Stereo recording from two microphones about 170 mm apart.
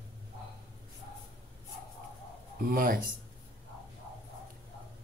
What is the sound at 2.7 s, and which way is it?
Speech, 55° right (ahead or behind).